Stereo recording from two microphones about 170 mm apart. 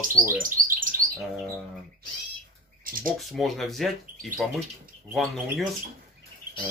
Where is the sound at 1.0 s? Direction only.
55° right (ahead or behind).